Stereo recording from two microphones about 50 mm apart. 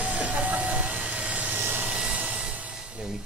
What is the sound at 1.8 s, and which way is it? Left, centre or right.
Vehicle, centre.